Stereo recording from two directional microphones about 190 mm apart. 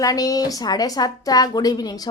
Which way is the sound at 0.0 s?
20° left (ahead or behind).